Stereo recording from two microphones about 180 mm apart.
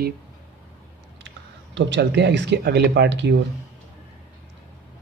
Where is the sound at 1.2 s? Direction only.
85° right.